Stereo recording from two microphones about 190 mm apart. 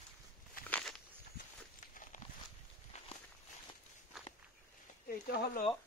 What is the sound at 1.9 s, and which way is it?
Horse, 45° left (ahead or behind).